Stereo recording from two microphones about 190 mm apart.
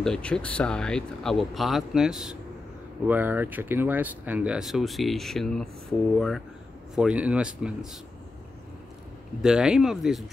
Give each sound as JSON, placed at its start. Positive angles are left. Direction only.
{"t": 0.0, "sound": "speech", "side_deg": 5}
{"t": 9.4, "sound": "speech", "side_deg": -5}